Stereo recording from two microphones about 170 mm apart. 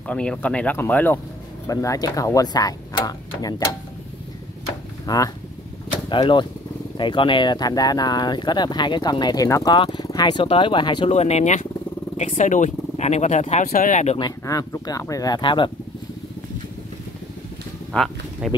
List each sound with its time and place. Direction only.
0.0 s speech: 5° left (ahead or behind); by 3.6 s 20° left (ahead or behind)
5.0 s speech: 20° left (ahead or behind)
11.1 s speech: 40° left (ahead or behind)
13.7 s speech: 55° left (ahead or behind)
14.1 s speech: 20° left (ahead or behind)
17.9 s speech: centre (ahead or behind)